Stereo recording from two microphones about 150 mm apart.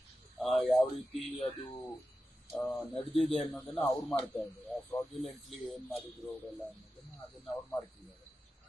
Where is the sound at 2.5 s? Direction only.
15° left (ahead or behind).